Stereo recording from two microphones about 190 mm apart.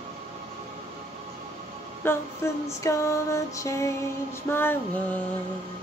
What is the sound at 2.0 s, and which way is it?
Female singing, 15° left (ahead or behind).